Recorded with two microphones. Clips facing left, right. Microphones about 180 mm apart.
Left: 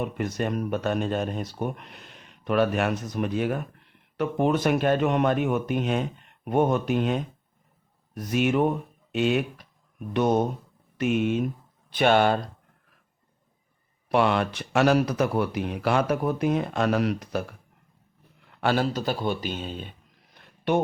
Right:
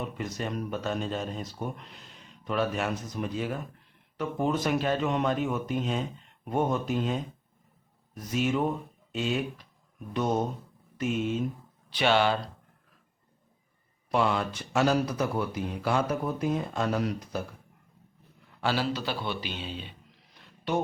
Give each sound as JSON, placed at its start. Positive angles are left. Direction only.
{"t": 0.0, "sound": "speech", "side_deg": 60}
{"t": 11.9, "sound": "speech", "side_deg": 50}
{"t": 14.1, "sound": "speech", "side_deg": 70}
{"t": 18.6, "sound": "a man's voice", "side_deg": 50}